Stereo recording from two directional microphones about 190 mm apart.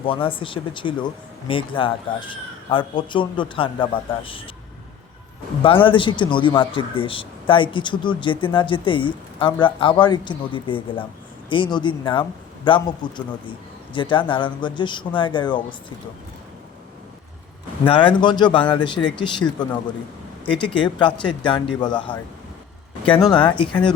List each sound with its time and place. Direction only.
0.0 s speech: 25° left (ahead or behind)
5.6 s speech: 25° left (ahead or behind)
17.8 s speech: 25° left (ahead or behind)
23.2 s speech: 25° left (ahead or behind)